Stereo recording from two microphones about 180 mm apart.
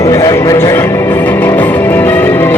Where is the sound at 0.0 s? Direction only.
20° left (ahead or behind).